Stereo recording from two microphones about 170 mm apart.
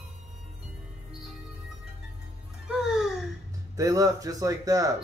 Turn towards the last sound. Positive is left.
turn(degrees=-20)  # may be behind; listen again after turning